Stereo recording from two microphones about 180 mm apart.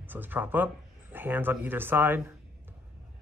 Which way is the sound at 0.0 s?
10° right (ahead or behind).